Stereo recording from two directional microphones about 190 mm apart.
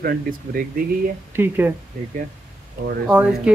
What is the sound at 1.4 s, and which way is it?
Speech, 10° right (ahead or behind).